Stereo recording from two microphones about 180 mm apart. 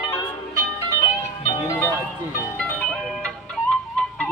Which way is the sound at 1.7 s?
10° left (ahead or behind).